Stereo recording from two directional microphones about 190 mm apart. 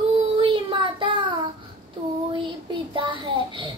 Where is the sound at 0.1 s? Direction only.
30° right (ahead or behind).